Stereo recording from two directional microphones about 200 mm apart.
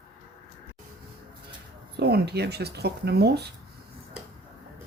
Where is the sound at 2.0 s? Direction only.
55° right (ahead or behind).